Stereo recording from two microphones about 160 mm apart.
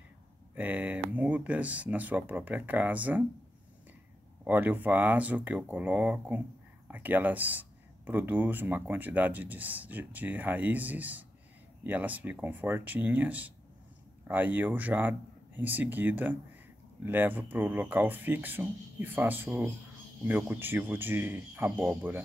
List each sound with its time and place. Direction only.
0.6 s speech: 10° right (ahead or behind)
4.5 s speech: 10° right (ahead or behind)